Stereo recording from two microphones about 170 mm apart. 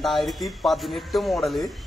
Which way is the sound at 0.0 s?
Centre (ahead or behind).